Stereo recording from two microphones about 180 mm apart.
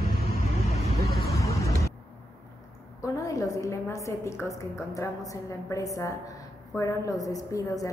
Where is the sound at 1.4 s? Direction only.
15° left (ahead or behind).